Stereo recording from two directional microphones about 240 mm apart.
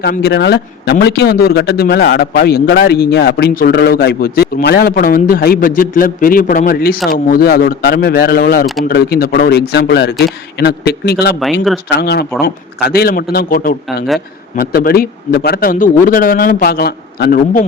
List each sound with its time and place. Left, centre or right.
0.0 s a man's voice: left